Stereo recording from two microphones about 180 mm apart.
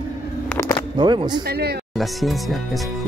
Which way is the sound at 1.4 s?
60° right (ahead or behind).